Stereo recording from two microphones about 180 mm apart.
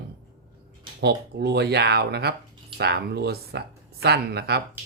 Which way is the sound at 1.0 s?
65° right (ahead or behind).